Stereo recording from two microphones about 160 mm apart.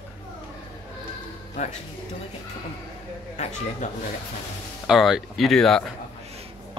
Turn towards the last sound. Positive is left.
turn(degrees=5)  # may be behind; listen again after turning